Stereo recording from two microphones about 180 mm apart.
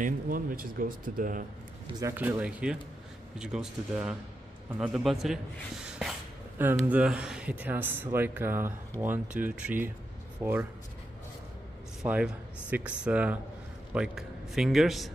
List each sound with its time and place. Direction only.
0.0 s speech: 50° right (ahead or behind)
2.0 s a man's voice: 15° right (ahead or behind)
12.0 s a man's voice: 5° right (ahead or behind)